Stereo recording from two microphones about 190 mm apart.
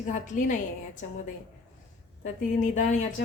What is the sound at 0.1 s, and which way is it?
Speech, 40° left (ahead or behind).